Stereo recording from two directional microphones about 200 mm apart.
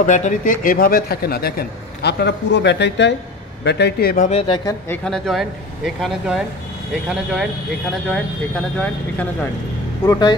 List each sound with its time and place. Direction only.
0.0 s speech: 40° left (ahead or behind)
4.3 s speech: 25° left (ahead or behind)
4.8 s speech: 5° left (ahead or behind)
10.0 s speech: 20° left (ahead or behind)